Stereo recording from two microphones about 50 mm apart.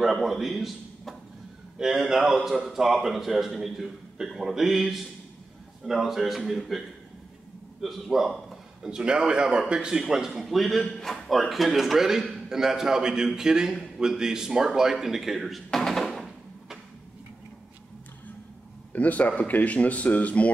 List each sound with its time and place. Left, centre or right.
0.0 s a man's voice: centre
7.8 s a man's voice: centre
8.9 s a man's voice: centre
15.8 s a sound: centre
18.9 s speech: left